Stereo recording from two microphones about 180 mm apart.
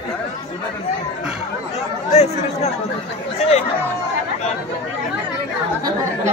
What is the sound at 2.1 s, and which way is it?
Chatter, 35° left (ahead or behind).